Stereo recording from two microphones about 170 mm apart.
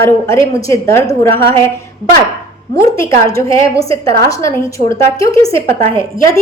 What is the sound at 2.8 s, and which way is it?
A woman's voice, 15° left (ahead or behind).